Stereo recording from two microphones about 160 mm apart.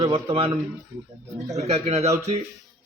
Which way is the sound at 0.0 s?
35° right (ahead or behind).